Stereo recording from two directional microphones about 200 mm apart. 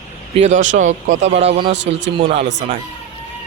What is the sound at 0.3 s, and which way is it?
Speech, 35° right (ahead or behind).